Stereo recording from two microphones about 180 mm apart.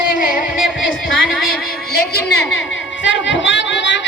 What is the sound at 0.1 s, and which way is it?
Music, 50° left (ahead or behind).